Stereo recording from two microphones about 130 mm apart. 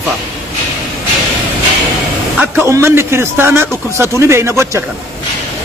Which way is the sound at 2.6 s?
20° right (ahead or behind).